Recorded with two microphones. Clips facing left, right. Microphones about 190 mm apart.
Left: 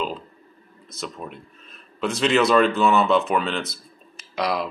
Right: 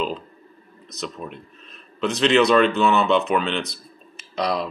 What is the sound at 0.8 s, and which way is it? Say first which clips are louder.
Speech: right 2 dB; 5° left (ahead or behind).